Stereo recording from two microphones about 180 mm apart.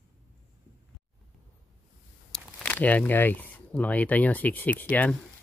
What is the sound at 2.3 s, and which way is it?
Speech, 5° left (ahead or behind).